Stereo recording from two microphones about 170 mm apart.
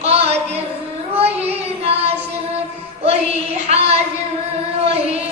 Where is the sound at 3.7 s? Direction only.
35° right (ahead or behind).